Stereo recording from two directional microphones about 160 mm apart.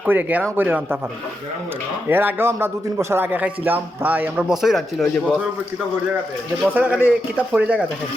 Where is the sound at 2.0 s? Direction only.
15° right (ahead or behind).